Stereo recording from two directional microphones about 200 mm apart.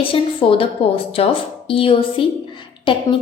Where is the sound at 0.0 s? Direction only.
25° left (ahead or behind).